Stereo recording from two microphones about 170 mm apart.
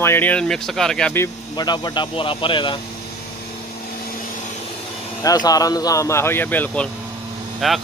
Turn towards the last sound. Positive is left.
turn(degrees=0)  # may be behind; listen again after turning